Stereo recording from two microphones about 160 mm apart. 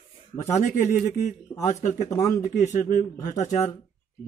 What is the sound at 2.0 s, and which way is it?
Speech, 20° left (ahead or behind).